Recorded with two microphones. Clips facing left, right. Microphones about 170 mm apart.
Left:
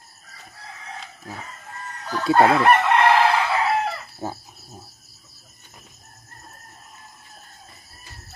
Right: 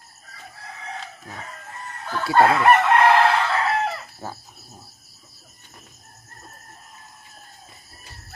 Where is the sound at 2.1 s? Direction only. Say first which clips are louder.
Left 5 dB; 20° left (ahead or behind).